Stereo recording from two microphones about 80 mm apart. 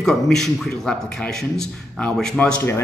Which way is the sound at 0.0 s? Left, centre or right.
Centre.